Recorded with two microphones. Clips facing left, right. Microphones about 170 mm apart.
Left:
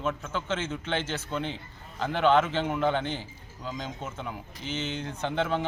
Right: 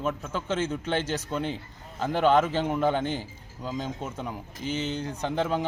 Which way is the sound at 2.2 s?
40° right (ahead or behind).